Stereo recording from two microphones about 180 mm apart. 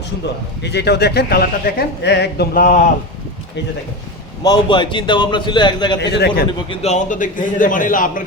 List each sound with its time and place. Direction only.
0.6 s a man's voice: 65° left (ahead or behind); by 2.9 s 50° left (ahead or behind)
4.4 s a man's voice: 25° left (ahead or behind)
6.0 s a man's voice: 70° left (ahead or behind)
6.7 s a man's voice: 40° left (ahead or behind)